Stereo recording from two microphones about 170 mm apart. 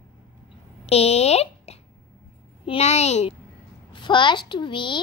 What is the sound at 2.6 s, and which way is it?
Speech, 35° left (ahead or behind).